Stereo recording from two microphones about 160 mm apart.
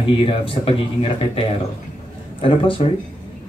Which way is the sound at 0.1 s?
35° left (ahead or behind).